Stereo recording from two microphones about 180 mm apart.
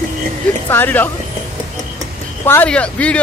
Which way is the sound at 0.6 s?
10° left (ahead or behind).